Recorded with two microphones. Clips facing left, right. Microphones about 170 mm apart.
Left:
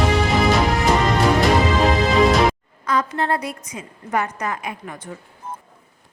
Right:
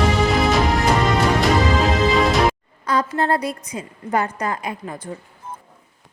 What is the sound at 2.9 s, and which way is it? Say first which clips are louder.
A woman's voice: right 2 dB; 35° right (ahead or behind).